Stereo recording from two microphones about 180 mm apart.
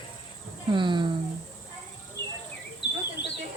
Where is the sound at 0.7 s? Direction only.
25° right (ahead or behind).